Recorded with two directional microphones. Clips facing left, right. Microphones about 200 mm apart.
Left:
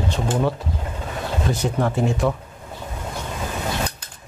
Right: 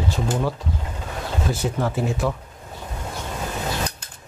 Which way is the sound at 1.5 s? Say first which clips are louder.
Left 2 dB; centre (ahead or behind).